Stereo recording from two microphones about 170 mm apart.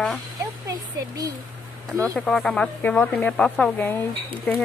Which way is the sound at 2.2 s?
Centre (ahead or behind).